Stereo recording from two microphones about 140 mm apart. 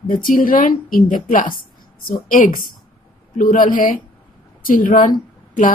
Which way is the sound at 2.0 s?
85° left.